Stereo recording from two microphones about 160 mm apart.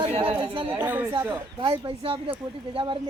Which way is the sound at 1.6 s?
35° right (ahead or behind).